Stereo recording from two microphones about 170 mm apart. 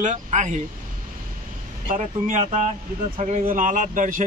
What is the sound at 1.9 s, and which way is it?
A man's voice, 45° right (ahead or behind).